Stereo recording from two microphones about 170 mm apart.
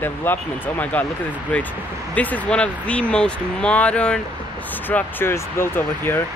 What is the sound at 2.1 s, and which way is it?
Speech, 10° left (ahead or behind).